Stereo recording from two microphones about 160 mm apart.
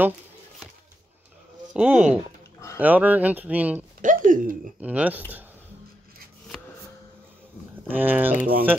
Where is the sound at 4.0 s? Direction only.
55° right (ahead or behind).